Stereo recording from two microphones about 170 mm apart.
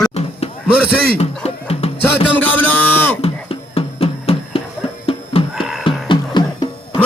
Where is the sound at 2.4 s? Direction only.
10° left (ahead or behind).